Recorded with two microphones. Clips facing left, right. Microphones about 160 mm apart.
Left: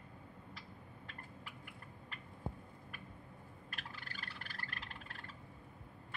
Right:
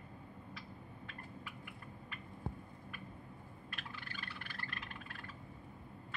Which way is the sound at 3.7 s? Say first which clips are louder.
Right 2 dB; 40° left (ahead or behind).